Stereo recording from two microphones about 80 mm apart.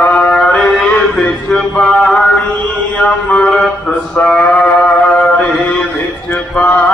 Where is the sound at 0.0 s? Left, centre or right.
Centre.